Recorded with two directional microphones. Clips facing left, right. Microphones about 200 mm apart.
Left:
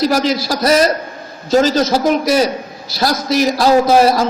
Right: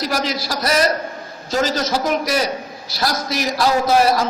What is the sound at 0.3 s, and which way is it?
A man's voice, 25° left (ahead or behind).